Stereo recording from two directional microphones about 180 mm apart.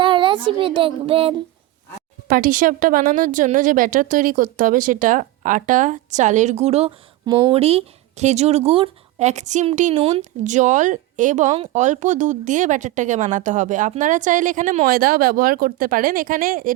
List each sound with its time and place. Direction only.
0.0 s speech: 30° right (ahead or behind)
2.2 s speech: 50° right (ahead or behind); by 6.9 s 35° right (ahead or behind)
7.3 s speech: 25° right (ahead or behind)
7.6 s speech: 35° right (ahead or behind); by 16.7 s 50° right (ahead or behind)